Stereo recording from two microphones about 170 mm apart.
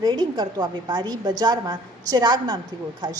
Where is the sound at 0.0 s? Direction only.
25° right (ahead or behind).